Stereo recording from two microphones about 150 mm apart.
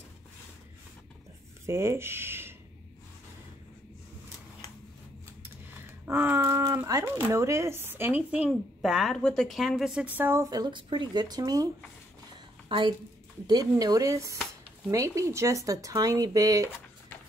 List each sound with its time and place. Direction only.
1.7 s speech: 20° right (ahead or behind)
6.0 s a woman's voice: 15° right (ahead or behind)
10.1 s a woman's voice: 15° right (ahead or behind)